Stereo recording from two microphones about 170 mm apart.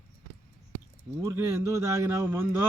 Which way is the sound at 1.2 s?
15° right (ahead or behind).